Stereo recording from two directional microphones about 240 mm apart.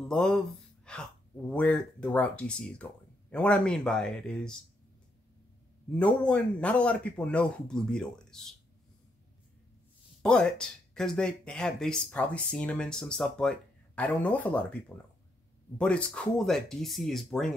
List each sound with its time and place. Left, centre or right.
0.1 s speech: centre
6.2 s speech: centre
10.2 s speech: centre
15.8 s speech: centre